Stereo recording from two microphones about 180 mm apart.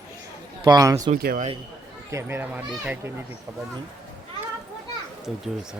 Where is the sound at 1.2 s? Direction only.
50° right (ahead or behind).